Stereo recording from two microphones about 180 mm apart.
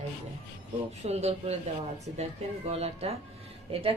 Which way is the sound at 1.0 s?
35° right (ahead or behind).